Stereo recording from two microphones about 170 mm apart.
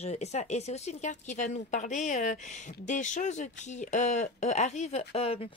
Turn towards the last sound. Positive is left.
turn(degrees=35)  # may be behind; listen again after turning